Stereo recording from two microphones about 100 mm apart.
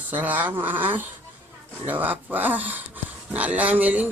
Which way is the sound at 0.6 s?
20° right (ahead or behind).